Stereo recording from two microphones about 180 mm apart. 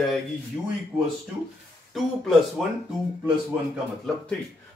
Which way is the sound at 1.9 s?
Centre (ahead or behind).